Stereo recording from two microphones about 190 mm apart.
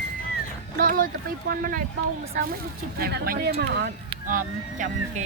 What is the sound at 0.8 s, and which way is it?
Speech, 45° right (ahead or behind).